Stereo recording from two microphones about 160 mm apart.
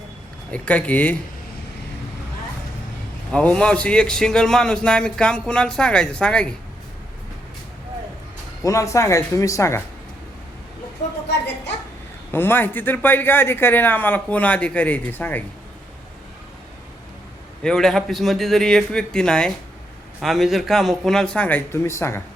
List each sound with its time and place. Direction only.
0.5 s a man's voice: 10° left (ahead or behind)
3.3 s a man's voice: 5° left (ahead or behind)
8.6 s speech: 20° left (ahead or behind)
12.3 s a man's voice: 15° left (ahead or behind)
17.6 s a man's voice: 5° left (ahead or behind)